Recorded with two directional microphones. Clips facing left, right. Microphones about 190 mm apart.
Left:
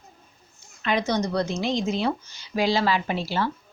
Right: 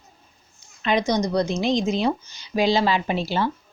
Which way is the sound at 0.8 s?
15° right (ahead or behind).